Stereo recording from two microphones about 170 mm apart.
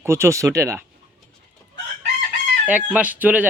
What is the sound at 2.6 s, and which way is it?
Speech, 10° right (ahead or behind).